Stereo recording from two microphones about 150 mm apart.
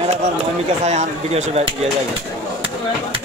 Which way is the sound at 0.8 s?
50° right (ahead or behind).